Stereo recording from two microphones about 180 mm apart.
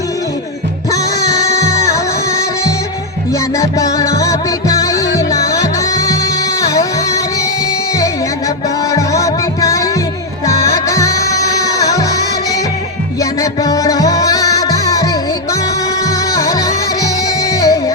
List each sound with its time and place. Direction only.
0.9 s music: 20° left (ahead or behind)
3.6 s music: 20° left (ahead or behind)
8.9 s music: 20° left (ahead or behind)